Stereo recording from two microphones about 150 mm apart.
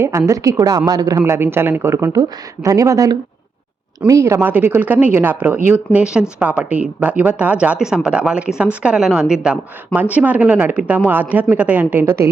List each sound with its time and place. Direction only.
0.0 s a woman's voice: 20° right (ahead or behind)